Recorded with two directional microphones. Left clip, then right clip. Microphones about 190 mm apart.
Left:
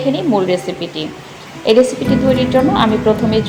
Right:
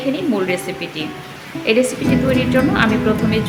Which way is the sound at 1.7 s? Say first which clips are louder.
Left 5 dB; 15° left (ahead or behind).